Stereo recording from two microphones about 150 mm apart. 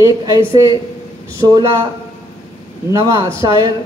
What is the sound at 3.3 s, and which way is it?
Speech, 20° right (ahead or behind).